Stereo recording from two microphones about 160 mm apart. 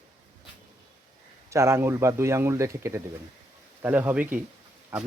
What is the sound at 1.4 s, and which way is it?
Speech, 15° right (ahead or behind).